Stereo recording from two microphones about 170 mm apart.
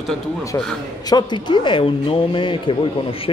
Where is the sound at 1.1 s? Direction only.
25° left (ahead or behind).